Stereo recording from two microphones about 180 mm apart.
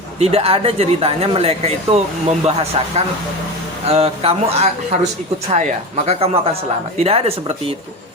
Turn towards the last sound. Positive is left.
turn(degrees=-30)  # may be behind; listen again after turning